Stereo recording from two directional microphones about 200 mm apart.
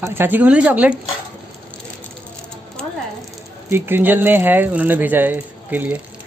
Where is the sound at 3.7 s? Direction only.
10° right (ahead or behind).